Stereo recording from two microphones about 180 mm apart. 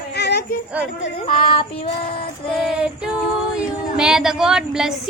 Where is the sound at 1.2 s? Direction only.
30° left (ahead or behind).